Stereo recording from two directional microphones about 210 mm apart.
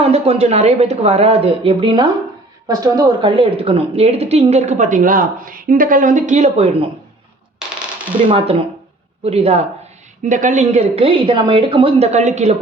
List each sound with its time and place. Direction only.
0.0 s a woman's voice: 30° right (ahead or behind)
7.8 s typewriter: 5° right (ahead or behind)
8.3 s a woman's voice: 25° right (ahead or behind)